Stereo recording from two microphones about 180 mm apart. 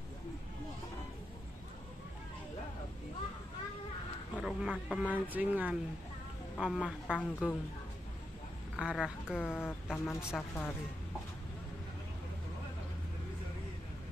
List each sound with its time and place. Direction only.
4.4 s a woman's voice: 5° right (ahead or behind)
7.2 s a woman's voice: 5° left (ahead or behind)
8.7 s speech: 5° right (ahead or behind)